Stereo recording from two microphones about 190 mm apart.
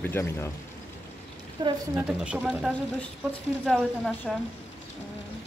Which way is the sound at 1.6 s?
25° right (ahead or behind).